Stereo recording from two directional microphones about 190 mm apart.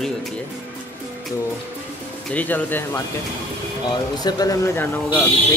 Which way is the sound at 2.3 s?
10° left (ahead or behind).